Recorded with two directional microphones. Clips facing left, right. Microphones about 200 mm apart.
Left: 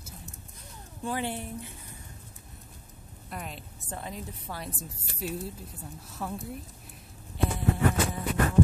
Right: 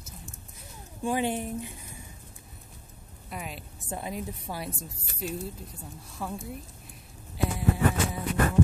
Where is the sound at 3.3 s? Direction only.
5° right (ahead or behind).